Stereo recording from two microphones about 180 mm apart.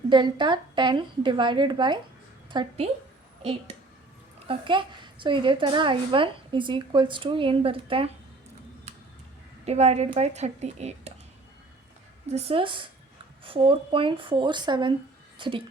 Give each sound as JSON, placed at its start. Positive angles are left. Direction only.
{"t": 0.1, "sound": "a woman's voice", "side_deg": -25}
{"t": 4.4, "sound": "a woman's voice", "side_deg": -25}
{"t": 9.6, "sound": "a woman's voice", "side_deg": -35}
{"t": 12.3, "sound": "a woman's voice", "side_deg": -30}